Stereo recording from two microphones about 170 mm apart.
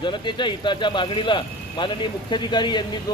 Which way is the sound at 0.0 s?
25° left (ahead or behind).